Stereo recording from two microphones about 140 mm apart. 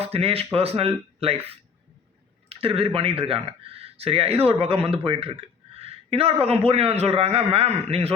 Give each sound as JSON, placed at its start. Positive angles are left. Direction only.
{"t": 0.0, "sound": "a man's voice", "side_deg": -45}